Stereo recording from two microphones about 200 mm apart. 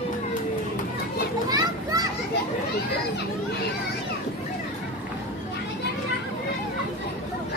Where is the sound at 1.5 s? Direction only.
20° right (ahead or behind).